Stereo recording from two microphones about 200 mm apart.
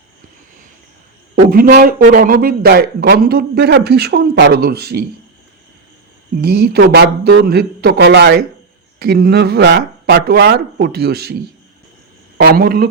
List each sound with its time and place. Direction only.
1.5 s a man's voice: 45° right (ahead or behind)
6.3 s a man's voice: 55° right (ahead or behind)
12.4 s a man's voice: 50° right (ahead or behind)